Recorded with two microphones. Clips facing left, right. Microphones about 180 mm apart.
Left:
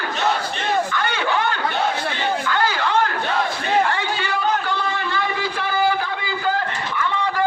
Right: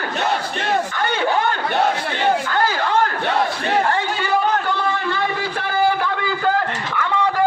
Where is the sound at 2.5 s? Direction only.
45° right (ahead or behind).